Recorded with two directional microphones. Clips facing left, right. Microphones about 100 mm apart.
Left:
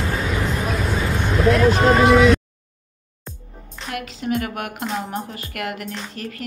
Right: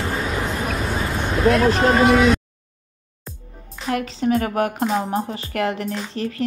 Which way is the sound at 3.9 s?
35° right (ahead or behind).